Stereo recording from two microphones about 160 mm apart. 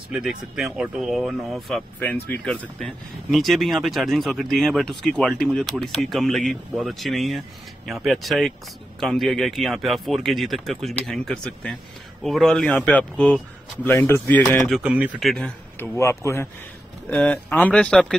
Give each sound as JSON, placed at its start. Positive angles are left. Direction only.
{"t": 0.1, "sound": "speech", "side_deg": -5}
{"t": 2.0, "sound": "speech", "side_deg": 10}
{"t": 14.7, "sound": "speech", "side_deg": -5}
{"t": 16.0, "sound": "speech", "side_deg": 20}
{"t": 17.1, "sound": "speech", "side_deg": 5}